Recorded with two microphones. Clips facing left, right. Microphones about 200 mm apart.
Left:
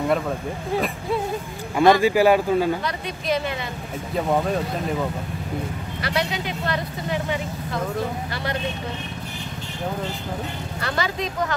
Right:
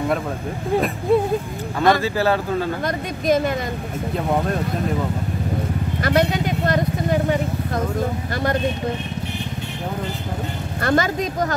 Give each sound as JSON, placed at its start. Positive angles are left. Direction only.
{"t": 1.8, "sound": "speech", "side_deg": 15}
{"t": 2.8, "sound": "a woman's voice", "side_deg": -45}
{"t": 6.0, "sound": "vehicle", "side_deg": -45}
{"t": 10.8, "sound": "a woman's voice", "side_deg": -50}